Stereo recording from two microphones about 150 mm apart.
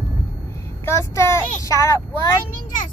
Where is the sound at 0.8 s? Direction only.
20° left (ahead or behind).